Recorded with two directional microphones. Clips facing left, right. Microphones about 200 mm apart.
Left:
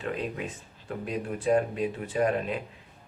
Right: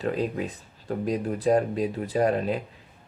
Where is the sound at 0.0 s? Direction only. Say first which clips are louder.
Right 5 dB; 35° right (ahead or behind).